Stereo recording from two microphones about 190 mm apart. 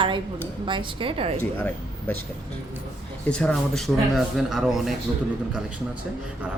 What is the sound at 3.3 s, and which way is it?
Speech, 5° left (ahead or behind).